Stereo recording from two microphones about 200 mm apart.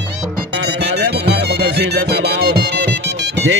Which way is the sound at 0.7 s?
60° right (ahead or behind).